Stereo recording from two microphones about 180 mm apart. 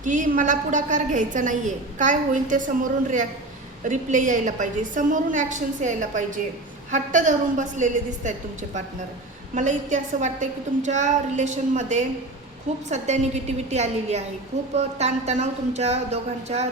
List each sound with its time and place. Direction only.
0.0 s a woman's voice: 45° right (ahead or behind)
3.8 s a woman's voice: 45° right (ahead or behind)
9.6 s a woman's voice: 40° right (ahead or behind)